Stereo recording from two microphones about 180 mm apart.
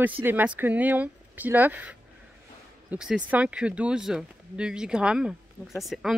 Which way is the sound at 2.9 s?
5° right (ahead or behind).